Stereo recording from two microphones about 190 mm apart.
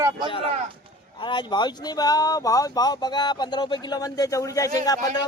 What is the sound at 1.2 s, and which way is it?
Speech, 25° left (ahead or behind).